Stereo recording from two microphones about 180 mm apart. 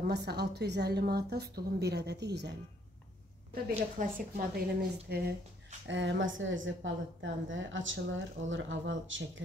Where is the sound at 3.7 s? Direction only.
50° right (ahead or behind).